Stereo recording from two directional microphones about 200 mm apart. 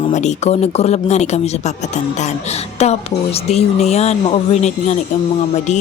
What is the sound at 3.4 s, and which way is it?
A woman's voice, 35° left (ahead or behind).